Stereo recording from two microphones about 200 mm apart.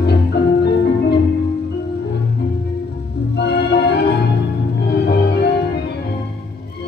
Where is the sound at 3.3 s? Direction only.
55° left (ahead or behind).